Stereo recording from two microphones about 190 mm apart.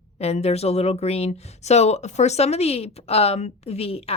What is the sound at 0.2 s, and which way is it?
Speech, 35° left (ahead or behind).